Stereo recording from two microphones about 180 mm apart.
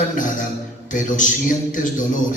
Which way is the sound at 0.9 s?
45° left (ahead or behind).